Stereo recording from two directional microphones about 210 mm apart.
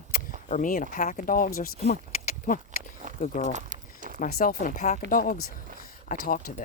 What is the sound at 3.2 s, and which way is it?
Speech, 35° left (ahead or behind).